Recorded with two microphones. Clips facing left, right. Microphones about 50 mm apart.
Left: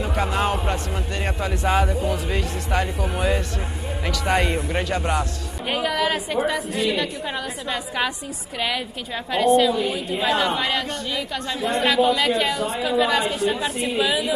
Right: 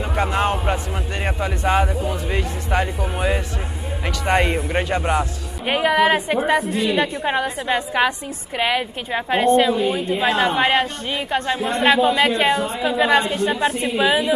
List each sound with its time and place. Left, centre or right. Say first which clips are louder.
0.3 s speech: right 2 dB; centre
2.0 s a woman's voice: right 1 dB; centre